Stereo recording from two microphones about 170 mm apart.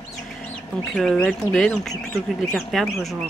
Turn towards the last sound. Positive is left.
turn(degrees=0)  # may be behind; listen again after turning